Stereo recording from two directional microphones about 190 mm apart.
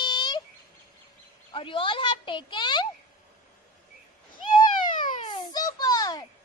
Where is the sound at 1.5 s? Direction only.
25° left (ahead or behind).